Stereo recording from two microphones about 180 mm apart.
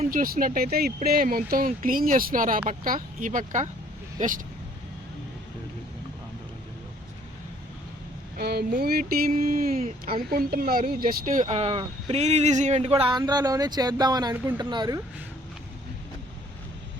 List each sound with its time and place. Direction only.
0.1 s speech: 50° right (ahead or behind)
8.4 s speech: 60° right (ahead or behind); by 9.9 s 40° right (ahead or behind)
10.1 s speech: 55° right (ahead or behind); by 14.3 s 20° right (ahead or behind)
14.3 s speech: 10° right (ahead or behind)
14.6 s speech: 25° right (ahead or behind)